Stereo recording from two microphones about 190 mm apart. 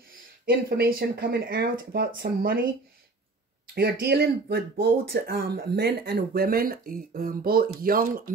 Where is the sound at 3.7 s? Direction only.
55° right (ahead or behind).